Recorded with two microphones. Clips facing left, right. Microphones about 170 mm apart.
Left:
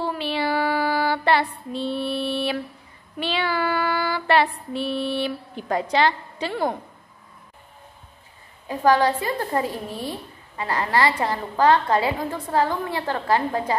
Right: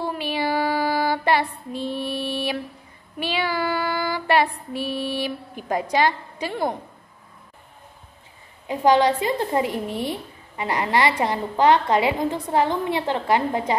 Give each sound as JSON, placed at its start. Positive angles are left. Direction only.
{"t": 0.0, "sound": "female singing", "side_deg": -15}
{"t": 8.6, "sound": "a woman's voice", "side_deg": -20}